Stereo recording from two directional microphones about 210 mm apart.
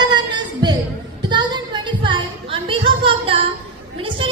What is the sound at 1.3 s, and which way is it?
Music, 20° right (ahead or behind).